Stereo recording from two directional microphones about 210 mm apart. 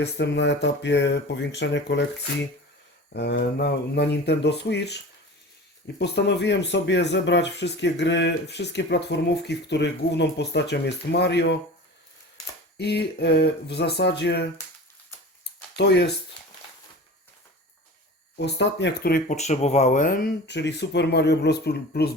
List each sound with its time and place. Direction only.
0.0 s speech: 55° left (ahead or behind)
3.1 s speech: 50° left (ahead or behind)
6.0 s speech: 55° left (ahead or behind)
12.7 s speech: 50° left (ahead or behind)
15.7 s speech: 50° left (ahead or behind)
18.3 s speech: 55° left (ahead or behind)